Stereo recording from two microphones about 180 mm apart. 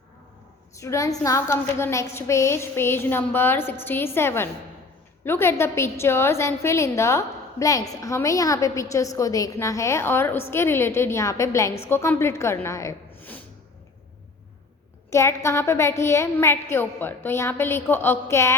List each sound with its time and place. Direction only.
0.8 s a woman's voice: 15° left (ahead or behind)
15.1 s a woman's voice: 15° left (ahead or behind)